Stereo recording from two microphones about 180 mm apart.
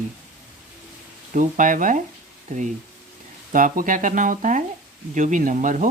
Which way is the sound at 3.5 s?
50° right (ahead or behind).